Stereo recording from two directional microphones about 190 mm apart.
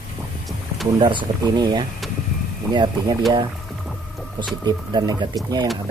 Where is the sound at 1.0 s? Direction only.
25° right (ahead or behind).